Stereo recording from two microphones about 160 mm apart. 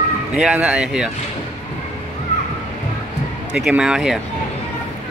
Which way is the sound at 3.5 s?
5° right (ahead or behind).